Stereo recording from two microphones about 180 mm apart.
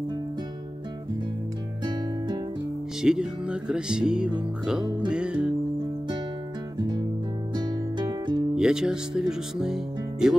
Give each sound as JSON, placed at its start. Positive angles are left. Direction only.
{"t": 1.9, "sound": "music", "side_deg": -25}
{"t": 3.0, "sound": "music", "side_deg": -5}
{"t": 7.5, "sound": "music", "side_deg": -25}
{"t": 8.5, "sound": "music", "side_deg": -5}